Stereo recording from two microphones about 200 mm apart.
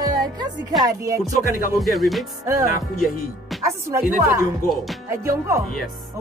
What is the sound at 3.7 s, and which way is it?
Speech, 15° right (ahead or behind).